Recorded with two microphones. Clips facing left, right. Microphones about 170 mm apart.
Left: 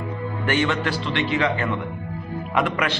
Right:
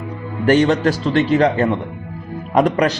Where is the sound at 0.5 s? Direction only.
40° right (ahead or behind).